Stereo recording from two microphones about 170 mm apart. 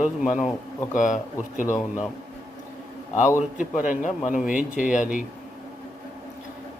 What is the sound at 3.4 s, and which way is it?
A man's voice, 50° left (ahead or behind).